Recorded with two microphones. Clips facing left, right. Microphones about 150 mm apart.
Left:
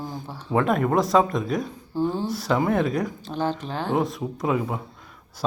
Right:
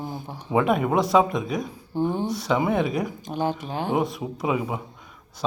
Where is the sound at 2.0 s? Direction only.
20° right (ahead or behind).